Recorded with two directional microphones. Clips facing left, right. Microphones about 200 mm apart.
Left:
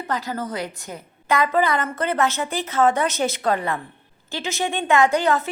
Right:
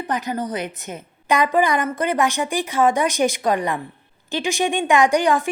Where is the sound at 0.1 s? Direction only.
20° right (ahead or behind).